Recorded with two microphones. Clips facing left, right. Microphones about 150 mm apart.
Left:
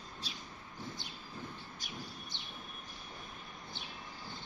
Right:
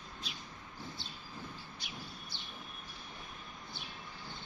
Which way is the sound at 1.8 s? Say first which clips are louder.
Left 2 dB; 45° left (ahead or behind).